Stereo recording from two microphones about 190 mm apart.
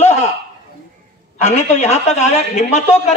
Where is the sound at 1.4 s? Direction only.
35° left (ahead or behind).